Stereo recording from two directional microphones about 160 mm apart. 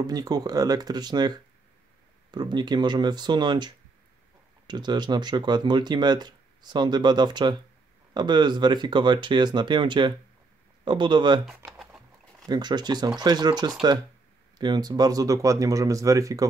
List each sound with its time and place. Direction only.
0.0 s speech: 25° right (ahead or behind)
11.4 s typing: centre (ahead or behind)
12.4 s speech: 25° right (ahead or behind)